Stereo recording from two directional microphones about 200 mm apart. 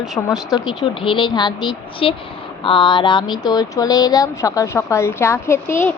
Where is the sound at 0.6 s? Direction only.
25° left (ahead or behind).